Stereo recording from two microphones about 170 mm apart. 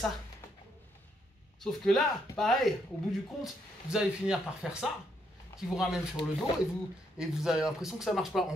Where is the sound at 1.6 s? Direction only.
Centre (ahead or behind).